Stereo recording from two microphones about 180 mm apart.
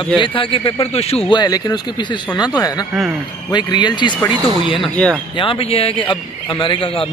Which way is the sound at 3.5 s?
25° left (ahead or behind).